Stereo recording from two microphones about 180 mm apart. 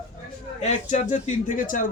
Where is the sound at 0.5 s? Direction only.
40° left (ahead or behind).